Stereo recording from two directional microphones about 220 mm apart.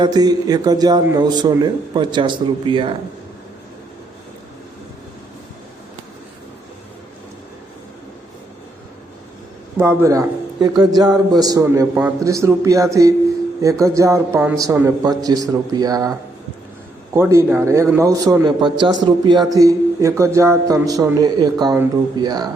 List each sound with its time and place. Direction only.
0.0 s speech: 20° right (ahead or behind)
9.7 s a man's voice: 10° right (ahead or behind)
17.2 s a man's voice: 10° right (ahead or behind)